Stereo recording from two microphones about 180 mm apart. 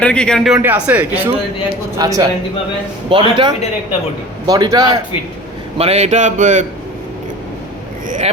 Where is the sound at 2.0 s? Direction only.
20° right (ahead or behind).